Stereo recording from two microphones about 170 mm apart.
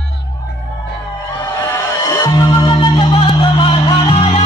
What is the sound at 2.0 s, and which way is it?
Music, 20° left (ahead or behind).